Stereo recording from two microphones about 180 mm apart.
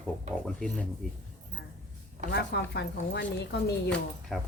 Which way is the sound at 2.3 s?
65° left (ahead or behind).